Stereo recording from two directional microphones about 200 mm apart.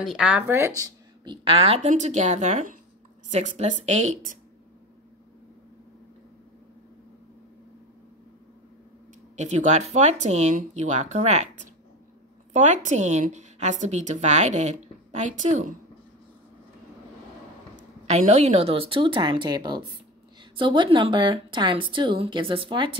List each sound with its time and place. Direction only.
0.0 s a woman's voice: 5° right (ahead or behind); by 4.4 s 40° right (ahead or behind)
9.4 s a woman's voice: 35° right (ahead or behind)
18.0 s a woman's voice: 35° right (ahead or behind)